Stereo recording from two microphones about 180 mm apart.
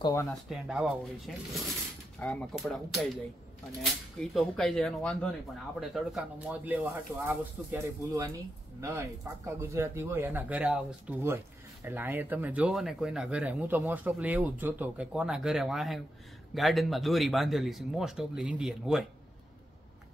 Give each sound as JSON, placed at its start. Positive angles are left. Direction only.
{"t": 0.0, "sound": "speech", "side_deg": 15}
{"t": 0.3, "sound": "speech", "side_deg": 0}
{"t": 4.2, "sound": "speech", "side_deg": 0}
{"t": 9.6, "sound": "speech", "side_deg": -10}